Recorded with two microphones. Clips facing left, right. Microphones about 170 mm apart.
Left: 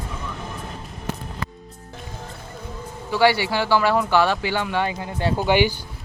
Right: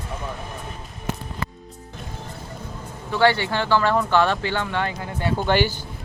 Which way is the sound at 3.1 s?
10° left (ahead or behind).